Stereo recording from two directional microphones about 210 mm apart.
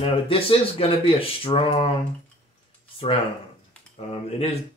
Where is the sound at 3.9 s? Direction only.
30° left (ahead or behind).